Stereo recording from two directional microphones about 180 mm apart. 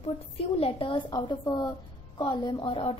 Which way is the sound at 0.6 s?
30° left (ahead or behind).